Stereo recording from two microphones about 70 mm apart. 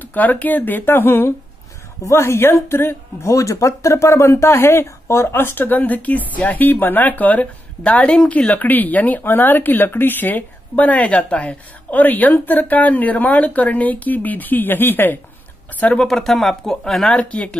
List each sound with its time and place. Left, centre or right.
0.0 s speech: left
16.1 s speech: centre
17.2 s speech: centre